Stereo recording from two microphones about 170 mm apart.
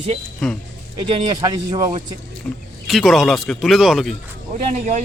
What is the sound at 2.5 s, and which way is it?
Speech, 5° left (ahead or behind).